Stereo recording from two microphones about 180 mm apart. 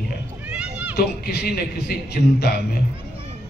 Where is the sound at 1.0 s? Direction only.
60° left (ahead or behind).